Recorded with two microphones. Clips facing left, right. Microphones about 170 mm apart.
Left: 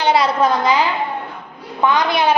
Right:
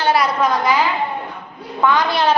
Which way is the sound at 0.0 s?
25° left (ahead or behind).